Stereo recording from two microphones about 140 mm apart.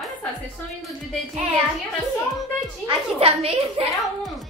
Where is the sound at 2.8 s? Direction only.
45° right (ahead or behind).